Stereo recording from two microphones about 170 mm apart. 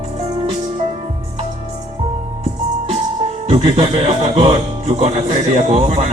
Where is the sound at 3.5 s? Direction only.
35° right (ahead or behind).